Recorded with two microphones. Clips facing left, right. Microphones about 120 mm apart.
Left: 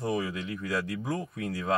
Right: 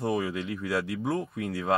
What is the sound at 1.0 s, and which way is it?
Speech, 25° right (ahead or behind).